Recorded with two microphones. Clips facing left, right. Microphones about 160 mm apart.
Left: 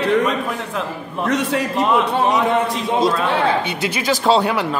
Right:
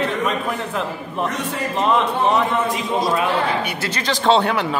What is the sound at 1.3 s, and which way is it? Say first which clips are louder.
Speech: left 6 dB; 80° left.